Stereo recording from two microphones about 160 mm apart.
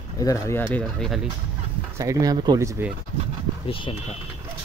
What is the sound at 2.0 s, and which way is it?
Speech, 20° right (ahead or behind).